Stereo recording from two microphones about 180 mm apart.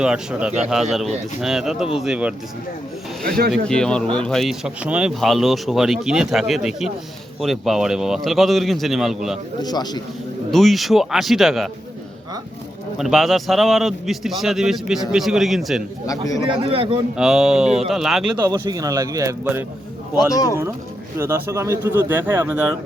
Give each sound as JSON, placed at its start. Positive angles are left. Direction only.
{"t": 0.0, "sound": "speech", "side_deg": -5}
{"t": 3.2, "sound": "speech", "side_deg": -55}
{"t": 3.5, "sound": "speech", "side_deg": 5}
{"t": 9.6, "sound": "speech", "side_deg": 20}
{"t": 10.5, "sound": "speech", "side_deg": 0}
{"t": 13.0, "sound": "speech", "side_deg": 0}
{"t": 16.5, "sound": "speech", "side_deg": -30}
{"t": 17.2, "sound": "speech", "side_deg": 0}
{"t": 18.3, "sound": "speech", "side_deg": -25}
{"t": 20.3, "sound": "speech", "side_deg": 20}
{"t": 21.2, "sound": "speech", "side_deg": -15}